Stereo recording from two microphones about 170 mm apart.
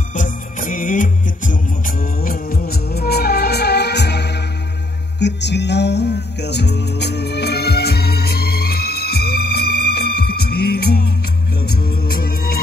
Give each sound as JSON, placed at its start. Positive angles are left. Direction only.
{"t": 0.1, "sound": "music", "side_deg": 50}